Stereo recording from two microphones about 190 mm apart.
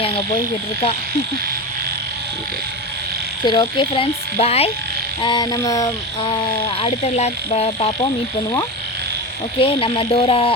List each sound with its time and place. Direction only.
3.4 s speech: 25° left (ahead or behind)
5.2 s speech: 20° left (ahead or behind)
6.8 s speech: 35° left (ahead or behind)
9.6 s speech: 30° left (ahead or behind)